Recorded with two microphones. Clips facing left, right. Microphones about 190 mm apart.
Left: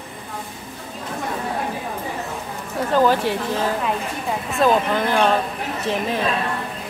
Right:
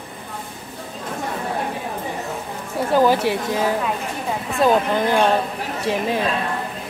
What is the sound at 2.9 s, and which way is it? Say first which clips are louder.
A woman's voice: right 1 dB; 10° right (ahead or behind).